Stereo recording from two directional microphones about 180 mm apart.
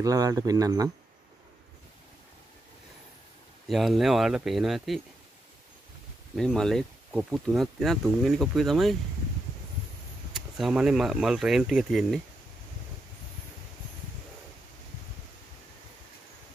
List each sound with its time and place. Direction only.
0.0 s speech: 20° right (ahead or behind)
3.6 s speech: centre (ahead or behind)
6.3 s speech: centre (ahead or behind)
10.3 s speech: 5° right (ahead or behind)